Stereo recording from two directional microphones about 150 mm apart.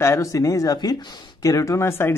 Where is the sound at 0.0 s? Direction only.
20° left (ahead or behind).